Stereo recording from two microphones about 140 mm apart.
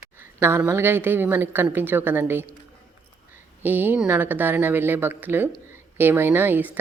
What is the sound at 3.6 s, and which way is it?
A woman's voice, 15° right (ahead or behind).